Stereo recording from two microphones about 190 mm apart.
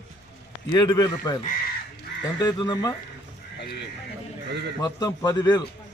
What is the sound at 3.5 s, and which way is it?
Neigh, 60° left (ahead or behind).